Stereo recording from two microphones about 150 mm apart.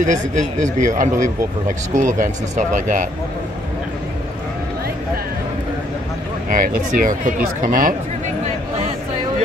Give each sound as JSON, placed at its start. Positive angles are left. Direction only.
{"t": 0.0, "sound": "speech", "side_deg": -55}
{"t": 6.5, "sound": "speech", "side_deg": -65}